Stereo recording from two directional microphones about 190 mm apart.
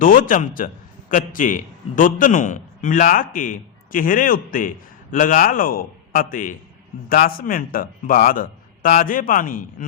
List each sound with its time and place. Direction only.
0.0 s a man's voice: 45° left (ahead or behind)